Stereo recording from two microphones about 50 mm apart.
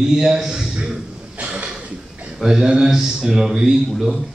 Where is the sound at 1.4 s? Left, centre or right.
Right.